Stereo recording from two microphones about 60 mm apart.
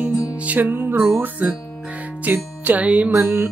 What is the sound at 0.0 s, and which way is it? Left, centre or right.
Music, right.